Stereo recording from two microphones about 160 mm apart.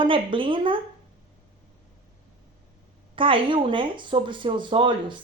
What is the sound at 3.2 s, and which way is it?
Speech, 35° right (ahead or behind).